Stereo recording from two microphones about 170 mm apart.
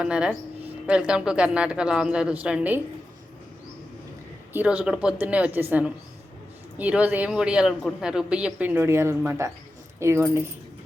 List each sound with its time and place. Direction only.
0.0 s speech: 5° right (ahead or behind)
4.5 s a man's voice: 5° right (ahead or behind)